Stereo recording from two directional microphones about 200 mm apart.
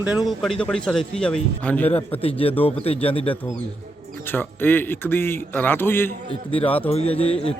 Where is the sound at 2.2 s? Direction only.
30° left (ahead or behind).